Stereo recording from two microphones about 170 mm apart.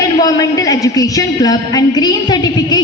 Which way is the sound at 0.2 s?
20° left (ahead or behind).